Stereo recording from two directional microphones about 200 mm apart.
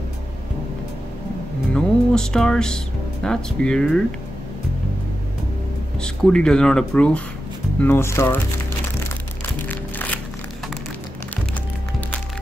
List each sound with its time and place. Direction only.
1.7 s music: 5° left (ahead or behind)
3.3 s speech: 5° left (ahead or behind)
5.9 s speech: 5° left (ahead or behind)